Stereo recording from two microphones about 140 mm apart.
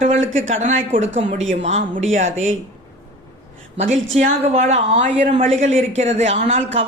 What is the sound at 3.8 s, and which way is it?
Speech, 55° right (ahead or behind).